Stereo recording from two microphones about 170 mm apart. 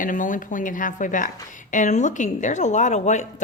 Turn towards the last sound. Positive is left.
turn(degrees=45)  # may be behind; listen again after turning